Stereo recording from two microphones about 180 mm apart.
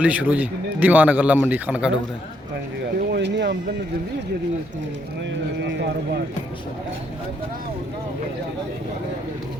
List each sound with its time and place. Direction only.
0.0 s a man's voice: 10° right (ahead or behind)
3.0 s speech: 65° right (ahead or behind)